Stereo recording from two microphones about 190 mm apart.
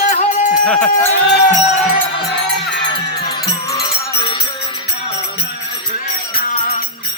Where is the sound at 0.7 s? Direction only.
5° left (ahead or behind).